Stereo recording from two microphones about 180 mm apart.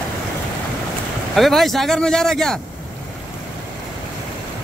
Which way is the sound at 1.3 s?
Centre (ahead or behind).